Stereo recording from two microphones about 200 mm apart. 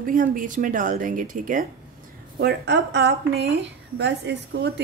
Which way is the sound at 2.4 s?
60° right (ahead or behind).